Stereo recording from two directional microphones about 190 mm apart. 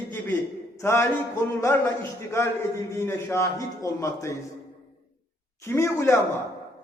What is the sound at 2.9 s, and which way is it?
A man's voice, 15° left (ahead or behind).